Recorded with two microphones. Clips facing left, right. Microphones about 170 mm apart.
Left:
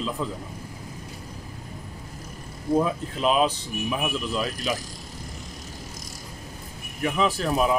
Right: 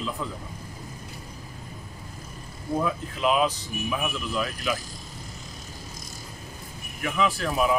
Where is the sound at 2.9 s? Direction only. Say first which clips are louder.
Left 1 dB; 30° left (ahead or behind).